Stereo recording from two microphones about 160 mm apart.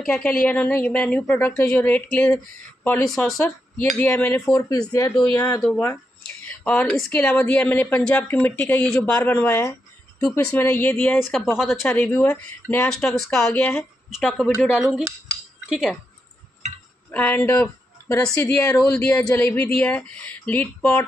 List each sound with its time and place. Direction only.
0.0 s a woman's voice: 5° left (ahead or behind); by 5.6 s 20° left (ahead or behind)
6.4 s a woman's voice: 10° left (ahead or behind)
11.1 s a woman's voice: centre (ahead or behind)
13.5 s a woman's voice: 15° left (ahead or behind)
14.1 s speech: 5° right (ahead or behind)
17.1 s speech: 10° left (ahead or behind)
18.2 s a woman's voice: 5° left (ahead or behind)